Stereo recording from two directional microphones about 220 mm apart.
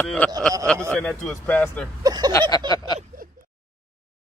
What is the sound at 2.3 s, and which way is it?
Speech, 15° left (ahead or behind).